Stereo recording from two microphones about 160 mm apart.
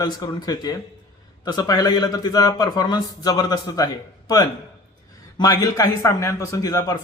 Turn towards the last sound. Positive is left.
turn(degrees=20)  # may be behind; listen again after turning